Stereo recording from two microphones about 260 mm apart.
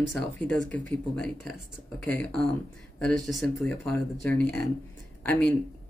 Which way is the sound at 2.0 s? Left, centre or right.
Centre.